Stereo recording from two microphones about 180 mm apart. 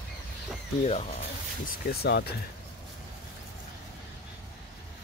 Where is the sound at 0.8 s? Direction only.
40° left (ahead or behind).